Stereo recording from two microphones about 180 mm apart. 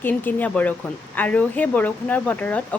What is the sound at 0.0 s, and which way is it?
Speech, 10° left (ahead or behind).